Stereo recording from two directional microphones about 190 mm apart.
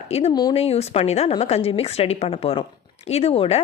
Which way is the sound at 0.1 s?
30° left (ahead or behind).